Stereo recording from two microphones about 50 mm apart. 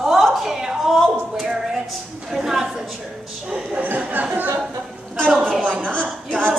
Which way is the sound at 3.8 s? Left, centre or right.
Right.